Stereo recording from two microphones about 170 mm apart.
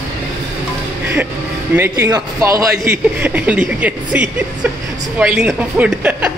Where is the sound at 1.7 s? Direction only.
15° right (ahead or behind).